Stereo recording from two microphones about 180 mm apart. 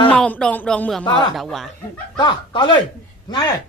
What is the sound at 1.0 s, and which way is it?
Speech, 25° left (ahead or behind).